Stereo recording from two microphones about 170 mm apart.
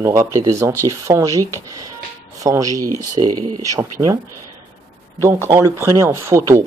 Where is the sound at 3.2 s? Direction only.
35° right (ahead or behind).